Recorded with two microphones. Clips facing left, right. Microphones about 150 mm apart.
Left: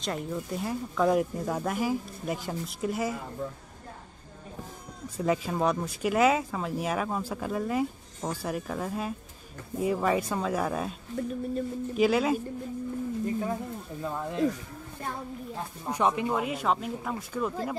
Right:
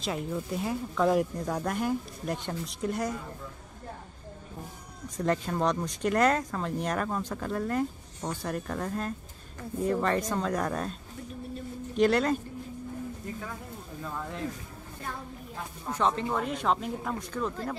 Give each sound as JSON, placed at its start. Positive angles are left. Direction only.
{"t": 0.0, "sound": "speech", "side_deg": 0}
{"t": 5.1, "sound": "speech", "side_deg": 5}
{"t": 14.0, "sound": "speech", "side_deg": 20}
{"t": 15.8, "sound": "speech", "side_deg": 15}